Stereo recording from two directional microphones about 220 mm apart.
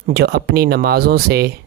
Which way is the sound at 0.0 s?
45° right (ahead or behind).